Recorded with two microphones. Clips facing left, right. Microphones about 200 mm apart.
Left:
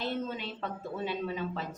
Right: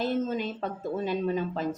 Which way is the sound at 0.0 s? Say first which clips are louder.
Right 7 dB; 45° right (ahead or behind).